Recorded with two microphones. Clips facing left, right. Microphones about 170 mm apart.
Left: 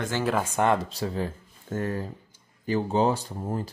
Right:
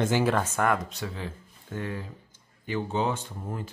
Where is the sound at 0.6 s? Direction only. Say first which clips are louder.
Left 3 dB; 25° left (ahead or behind).